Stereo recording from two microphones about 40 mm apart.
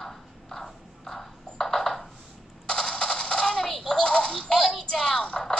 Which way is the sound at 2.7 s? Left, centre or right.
Centre.